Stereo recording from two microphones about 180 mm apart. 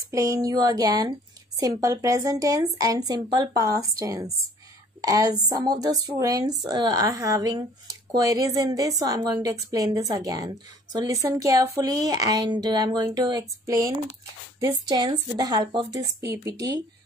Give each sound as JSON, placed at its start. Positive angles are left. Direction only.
{"t": 0.1, "sound": "speech", "side_deg": -20}